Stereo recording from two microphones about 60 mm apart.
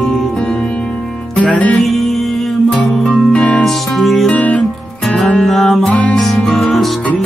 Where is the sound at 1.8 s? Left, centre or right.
Centre.